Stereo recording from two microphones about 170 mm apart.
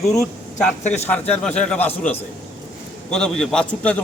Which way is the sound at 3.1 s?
5° left (ahead or behind).